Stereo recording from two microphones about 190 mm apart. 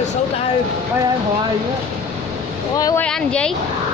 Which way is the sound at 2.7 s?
20° left (ahead or behind).